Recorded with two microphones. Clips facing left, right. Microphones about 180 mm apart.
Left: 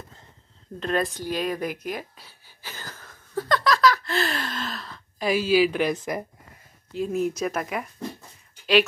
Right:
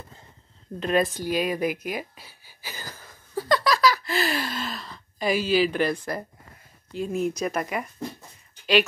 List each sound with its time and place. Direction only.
0.7 s speech: 5° right (ahead or behind); by 6.2 s 15° left (ahead or behind)
6.9 s speech: centre (ahead or behind)